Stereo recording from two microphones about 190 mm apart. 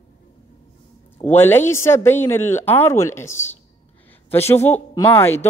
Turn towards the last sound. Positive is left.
turn(degrees=10)  # may be behind; listen again after turning